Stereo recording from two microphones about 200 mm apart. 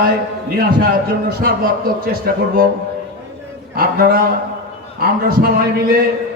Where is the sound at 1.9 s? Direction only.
45° right (ahead or behind).